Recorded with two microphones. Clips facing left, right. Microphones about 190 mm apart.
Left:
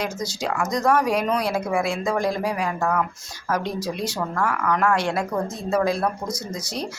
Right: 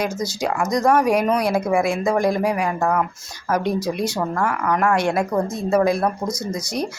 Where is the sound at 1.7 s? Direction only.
45° right (ahead or behind).